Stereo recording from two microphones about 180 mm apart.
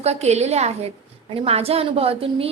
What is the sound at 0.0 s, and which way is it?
A woman's voice, 35° right (ahead or behind).